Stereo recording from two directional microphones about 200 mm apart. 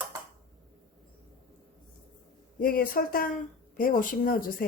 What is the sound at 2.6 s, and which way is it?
Speech, 45° left (ahead or behind).